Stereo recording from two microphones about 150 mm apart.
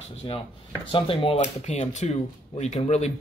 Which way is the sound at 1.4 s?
50° left (ahead or behind).